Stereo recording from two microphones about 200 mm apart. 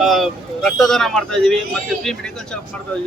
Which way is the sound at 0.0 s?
Centre (ahead or behind).